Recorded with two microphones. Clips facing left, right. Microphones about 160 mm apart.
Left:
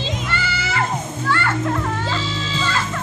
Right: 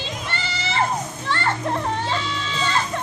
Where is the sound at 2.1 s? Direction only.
30° left (ahead or behind).